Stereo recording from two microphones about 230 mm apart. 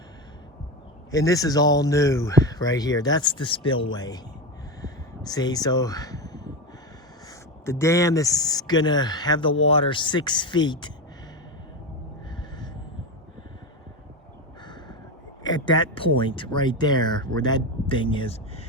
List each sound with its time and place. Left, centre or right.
1.1 s speech: centre
4.8 s a sound: centre
7.6 s speech: centre
15.4 s speech: centre